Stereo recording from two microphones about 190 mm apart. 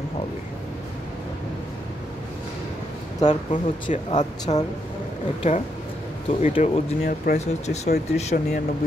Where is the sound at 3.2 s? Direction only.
40° left (ahead or behind).